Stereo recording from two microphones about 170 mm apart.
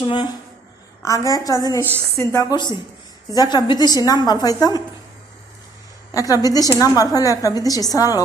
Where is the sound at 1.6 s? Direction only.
20° left (ahead or behind).